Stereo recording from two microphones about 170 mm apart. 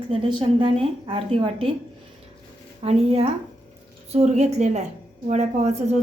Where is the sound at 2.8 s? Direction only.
35° right (ahead or behind).